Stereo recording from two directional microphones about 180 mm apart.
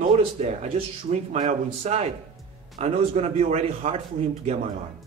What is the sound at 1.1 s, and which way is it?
A man's voice, 40° right (ahead or behind).